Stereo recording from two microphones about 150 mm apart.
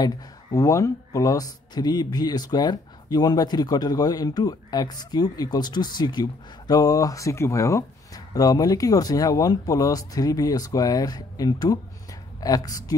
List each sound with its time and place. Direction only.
0.0 s speech: 25° left (ahead or behind)